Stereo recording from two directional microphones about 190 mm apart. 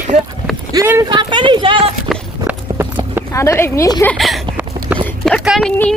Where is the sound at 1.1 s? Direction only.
25° right (ahead or behind).